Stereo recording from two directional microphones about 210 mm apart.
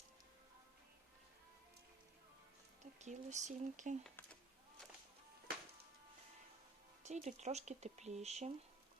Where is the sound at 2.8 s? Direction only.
35° right (ahead or behind).